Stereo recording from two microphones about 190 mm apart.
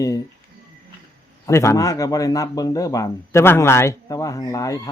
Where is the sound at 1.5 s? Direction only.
15° left (ahead or behind).